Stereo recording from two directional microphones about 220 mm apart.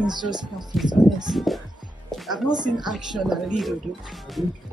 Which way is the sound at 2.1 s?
Centre (ahead or behind).